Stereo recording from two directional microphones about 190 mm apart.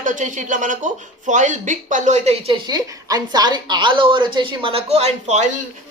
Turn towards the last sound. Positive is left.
turn(degrees=-35)  # may be behind; listen again after turning